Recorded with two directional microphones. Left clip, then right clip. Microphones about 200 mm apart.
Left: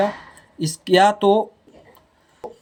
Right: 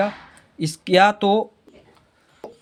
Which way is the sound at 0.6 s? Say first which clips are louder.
Even; 20° right (ahead or behind).